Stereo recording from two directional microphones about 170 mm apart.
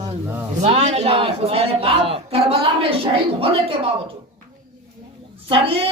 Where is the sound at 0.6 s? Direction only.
40° right (ahead or behind).